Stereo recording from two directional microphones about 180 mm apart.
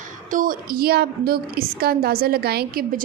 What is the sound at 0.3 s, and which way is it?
A woman's voice, 50° right (ahead or behind).